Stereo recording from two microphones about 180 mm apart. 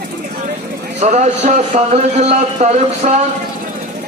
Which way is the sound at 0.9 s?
40° right (ahead or behind).